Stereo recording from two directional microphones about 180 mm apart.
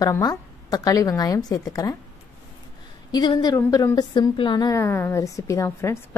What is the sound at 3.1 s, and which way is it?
A woman's voice, 25° left (ahead or behind).